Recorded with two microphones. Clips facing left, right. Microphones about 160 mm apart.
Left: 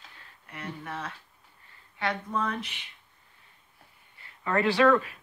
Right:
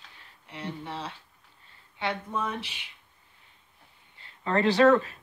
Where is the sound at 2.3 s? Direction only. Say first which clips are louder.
Left 1 dB; 15° right (ahead or behind).